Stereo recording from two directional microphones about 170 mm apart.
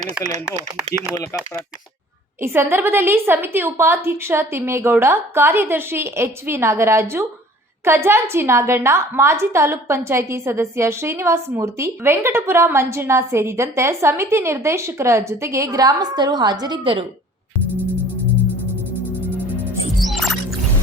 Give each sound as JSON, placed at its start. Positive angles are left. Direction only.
{"t": 1.1, "sound": "speech", "side_deg": 15}
{"t": 2.4, "sound": "a woman's voice", "side_deg": -15}
{"t": 20.0, "sound": "music", "side_deg": 0}